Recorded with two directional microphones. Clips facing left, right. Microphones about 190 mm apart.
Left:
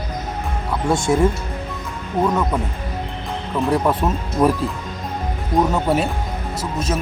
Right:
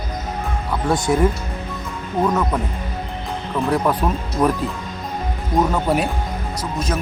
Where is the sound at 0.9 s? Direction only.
25° left (ahead or behind).